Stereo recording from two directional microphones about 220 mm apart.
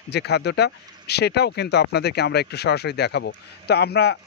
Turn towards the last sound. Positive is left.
turn(degrees=45)  # may be behind; listen again after turning